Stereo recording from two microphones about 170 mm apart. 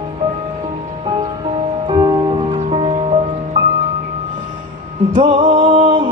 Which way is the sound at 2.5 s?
40° right (ahead or behind).